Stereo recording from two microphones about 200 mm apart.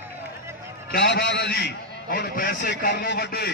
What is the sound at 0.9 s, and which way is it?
A man's voice, 55° left (ahead or behind).